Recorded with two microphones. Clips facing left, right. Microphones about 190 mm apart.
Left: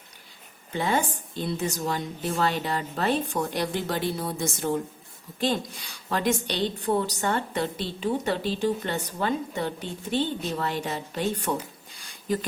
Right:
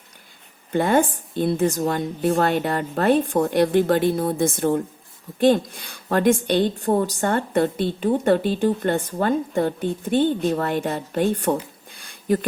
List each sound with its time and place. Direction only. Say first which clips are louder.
0.7 s a woman's voice: right 7 dB; 55° right (ahead or behind)